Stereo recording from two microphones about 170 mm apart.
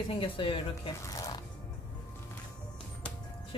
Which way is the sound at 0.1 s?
30° left (ahead or behind).